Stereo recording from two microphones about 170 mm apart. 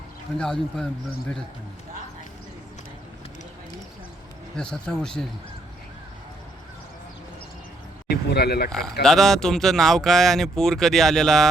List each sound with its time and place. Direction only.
0.3 s speech: 5° left (ahead or behind)
4.5 s speech: 5° left (ahead or behind)
8.1 s speech: 70° left (ahead or behind)
8.7 s speech: centre (ahead or behind)